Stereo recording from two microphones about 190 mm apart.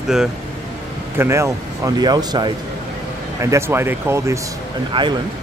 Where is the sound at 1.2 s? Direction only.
15° right (ahead or behind).